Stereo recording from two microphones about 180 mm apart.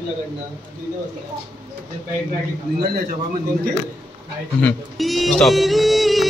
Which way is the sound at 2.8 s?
55° right (ahead or behind).